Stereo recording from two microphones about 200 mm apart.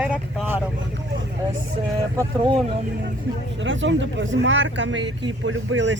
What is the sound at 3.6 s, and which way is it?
Speech, 70° right (ahead or behind).